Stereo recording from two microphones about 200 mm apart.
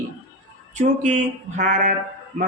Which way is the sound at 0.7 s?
35° right (ahead or behind).